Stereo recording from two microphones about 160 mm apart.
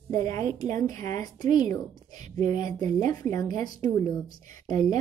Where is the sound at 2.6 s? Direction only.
20° left (ahead or behind).